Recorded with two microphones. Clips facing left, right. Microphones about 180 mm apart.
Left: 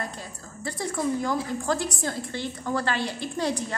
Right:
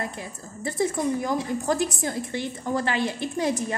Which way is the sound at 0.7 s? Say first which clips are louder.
Right 3 dB; 20° right (ahead or behind).